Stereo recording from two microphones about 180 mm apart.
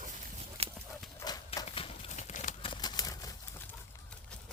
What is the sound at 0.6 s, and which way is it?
Horse, 35° right (ahead or behind).